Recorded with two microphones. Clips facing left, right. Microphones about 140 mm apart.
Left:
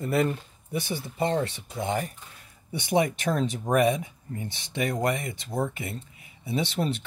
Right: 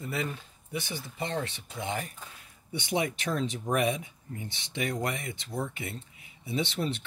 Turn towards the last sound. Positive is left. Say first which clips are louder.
# left 3 dB
turn(degrees=40)  # may be behind; listen again after turning